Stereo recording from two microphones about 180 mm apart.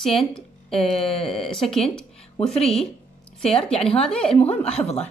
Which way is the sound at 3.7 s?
5° left (ahead or behind).